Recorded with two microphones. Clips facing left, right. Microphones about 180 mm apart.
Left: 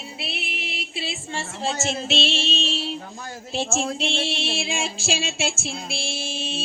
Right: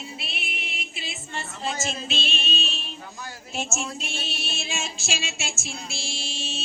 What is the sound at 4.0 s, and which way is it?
Music, 90° left.